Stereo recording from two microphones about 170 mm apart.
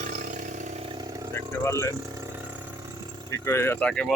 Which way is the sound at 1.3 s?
15° left (ahead or behind).